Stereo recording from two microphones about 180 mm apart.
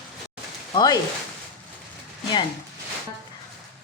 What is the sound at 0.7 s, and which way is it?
Speech, 25° left (ahead or behind).